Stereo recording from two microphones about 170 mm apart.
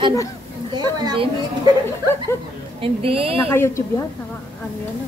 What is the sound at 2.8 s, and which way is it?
Speech, 35° right (ahead or behind).